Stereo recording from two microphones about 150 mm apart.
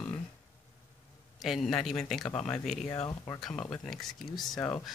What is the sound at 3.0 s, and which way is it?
Speech, 20° left (ahead or behind).